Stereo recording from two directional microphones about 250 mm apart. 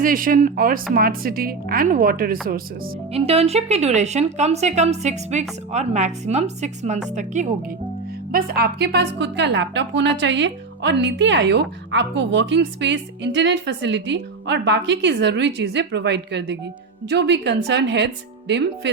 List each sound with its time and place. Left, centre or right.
0.0 s speech: right
3.1 s a woman's voice: right